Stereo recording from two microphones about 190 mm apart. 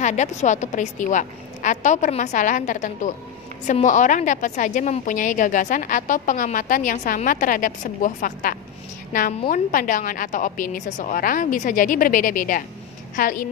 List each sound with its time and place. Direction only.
0.0 s a woman's voice: 40° left (ahead or behind)